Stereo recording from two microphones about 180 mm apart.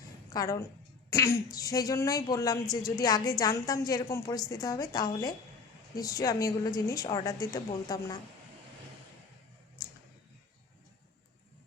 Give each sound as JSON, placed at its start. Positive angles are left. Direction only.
{"t": 0.3, "sound": "a woman's voice", "side_deg": 20}